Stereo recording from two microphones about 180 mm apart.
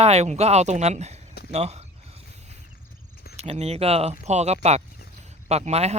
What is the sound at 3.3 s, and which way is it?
Speech, 35° right (ahead or behind).